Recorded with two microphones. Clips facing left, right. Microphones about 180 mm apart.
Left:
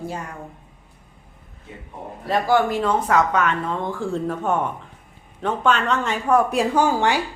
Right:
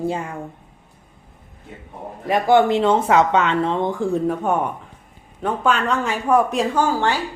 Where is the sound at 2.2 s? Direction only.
20° right (ahead or behind); by 6.7 s centre (ahead or behind).